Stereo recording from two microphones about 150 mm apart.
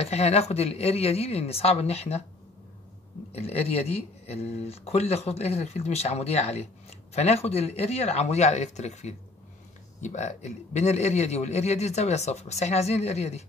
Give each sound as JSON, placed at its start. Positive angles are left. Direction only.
{"t": 0.0, "sound": "a man's voice", "side_deg": 45}
{"t": 3.3, "sound": "a man's voice", "side_deg": 45}